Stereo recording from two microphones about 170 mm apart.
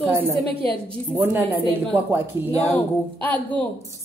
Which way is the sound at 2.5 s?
5° left (ahead or behind).